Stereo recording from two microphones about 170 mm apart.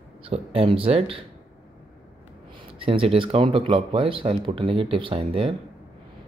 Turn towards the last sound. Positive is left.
turn(degrees=-35)  # may be behind; listen again after turning